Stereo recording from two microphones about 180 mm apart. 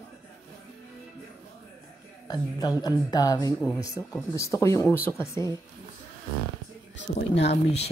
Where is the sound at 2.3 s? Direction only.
20° left (ahead or behind).